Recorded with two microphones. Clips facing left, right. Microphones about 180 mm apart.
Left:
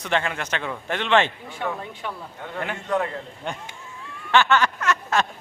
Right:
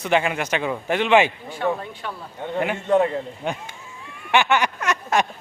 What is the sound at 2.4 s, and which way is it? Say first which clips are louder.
Speech: right 8 dB; 20° right (ahead or behind).